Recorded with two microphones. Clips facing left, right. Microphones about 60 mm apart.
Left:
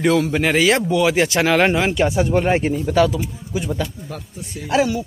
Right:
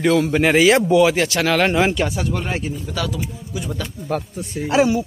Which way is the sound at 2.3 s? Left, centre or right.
Left.